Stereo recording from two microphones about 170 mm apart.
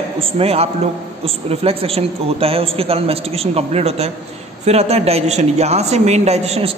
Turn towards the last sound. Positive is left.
turn(degrees=-35)  # may be behind; listen again after turning